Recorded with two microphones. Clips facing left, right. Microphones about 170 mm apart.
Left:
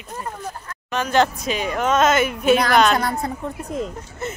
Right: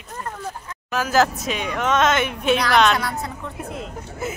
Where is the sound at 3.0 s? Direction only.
50° left (ahead or behind).